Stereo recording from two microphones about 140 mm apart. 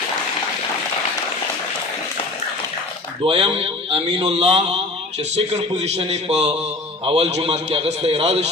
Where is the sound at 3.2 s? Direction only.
40° right (ahead or behind).